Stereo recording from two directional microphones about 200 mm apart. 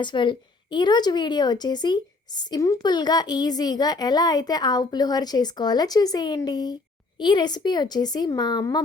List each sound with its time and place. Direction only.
0.0 s a woman's voice: 25° left (ahead or behind)